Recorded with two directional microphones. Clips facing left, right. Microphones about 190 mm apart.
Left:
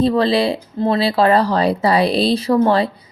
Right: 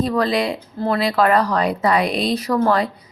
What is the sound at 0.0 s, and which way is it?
Speech, 30° left (ahead or behind).